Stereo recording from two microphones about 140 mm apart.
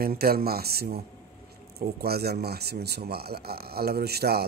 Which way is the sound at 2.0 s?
90° right.